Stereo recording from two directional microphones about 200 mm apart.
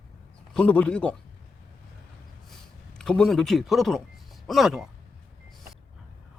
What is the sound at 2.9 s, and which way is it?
Speech, 5° left (ahead or behind).